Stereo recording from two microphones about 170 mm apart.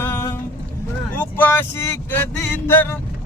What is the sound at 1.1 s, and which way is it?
Vehicle, 10° left (ahead or behind).